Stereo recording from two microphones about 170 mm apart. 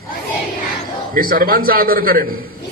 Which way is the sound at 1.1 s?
55° right (ahead or behind).